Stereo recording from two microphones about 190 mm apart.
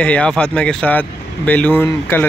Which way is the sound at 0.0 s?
5° left (ahead or behind).